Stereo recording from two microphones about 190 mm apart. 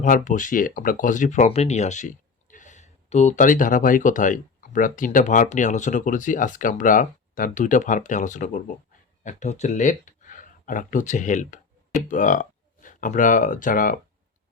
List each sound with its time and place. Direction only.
0.0 s speech: 40° left (ahead or behind)